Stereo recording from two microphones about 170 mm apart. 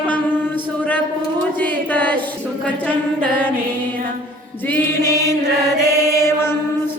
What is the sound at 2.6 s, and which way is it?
Music, 10° left (ahead or behind).